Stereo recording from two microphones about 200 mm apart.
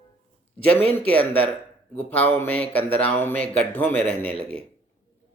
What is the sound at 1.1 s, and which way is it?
Speech, 5° left (ahead or behind).